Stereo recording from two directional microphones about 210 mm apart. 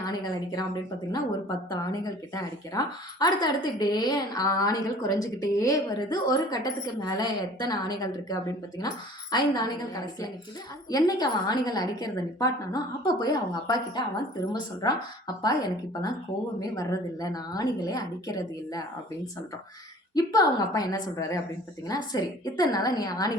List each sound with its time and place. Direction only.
0.0 s speech: 20° left (ahead or behind)
1.7 s a woman's voice: 20° left (ahead or behind)
20.1 s a woman's voice: 20° left (ahead or behind)